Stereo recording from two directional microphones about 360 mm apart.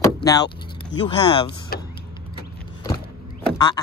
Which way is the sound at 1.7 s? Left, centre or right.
Left.